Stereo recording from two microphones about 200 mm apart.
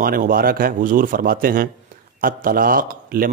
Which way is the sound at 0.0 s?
45° right (ahead or behind).